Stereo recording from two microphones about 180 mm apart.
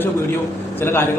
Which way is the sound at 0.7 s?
15° left (ahead or behind).